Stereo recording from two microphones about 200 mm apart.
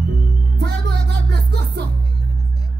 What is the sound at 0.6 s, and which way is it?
Music, 55° right (ahead or behind).